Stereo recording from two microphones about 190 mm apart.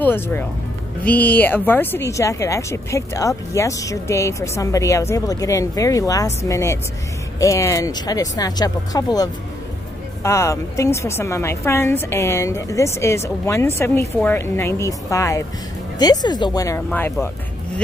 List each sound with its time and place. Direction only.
0.0 s a woman's voice: 10° left (ahead or behind)